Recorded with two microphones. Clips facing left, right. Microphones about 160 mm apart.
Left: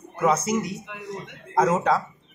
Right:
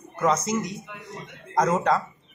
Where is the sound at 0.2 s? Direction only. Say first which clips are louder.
Left 1 dB; 10° left (ahead or behind).